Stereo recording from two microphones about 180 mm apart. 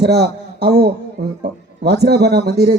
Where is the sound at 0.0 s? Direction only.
65° right (ahead or behind).